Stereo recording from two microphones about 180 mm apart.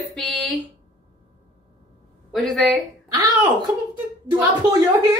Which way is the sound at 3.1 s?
20° right (ahead or behind).